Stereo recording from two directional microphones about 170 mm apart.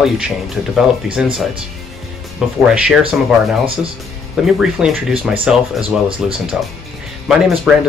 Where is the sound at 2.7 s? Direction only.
5° right (ahead or behind).